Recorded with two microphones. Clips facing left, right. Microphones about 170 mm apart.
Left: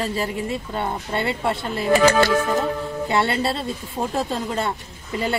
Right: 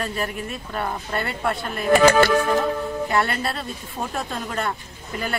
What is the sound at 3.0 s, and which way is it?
Speech, 25° left (ahead or behind).